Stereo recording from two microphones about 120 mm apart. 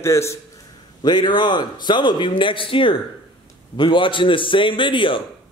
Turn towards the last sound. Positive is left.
turn(degrees=45)  # may be behind; listen again after turning